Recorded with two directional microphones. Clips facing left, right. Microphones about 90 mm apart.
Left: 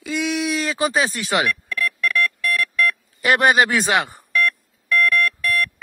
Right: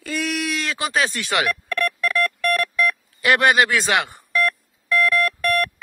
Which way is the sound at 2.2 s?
50° right (ahead or behind).